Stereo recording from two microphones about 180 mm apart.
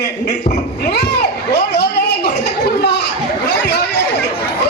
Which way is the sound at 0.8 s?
70° left (ahead or behind).